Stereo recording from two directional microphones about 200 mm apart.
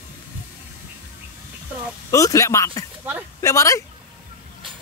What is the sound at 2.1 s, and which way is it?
Speech, 15° left (ahead or behind).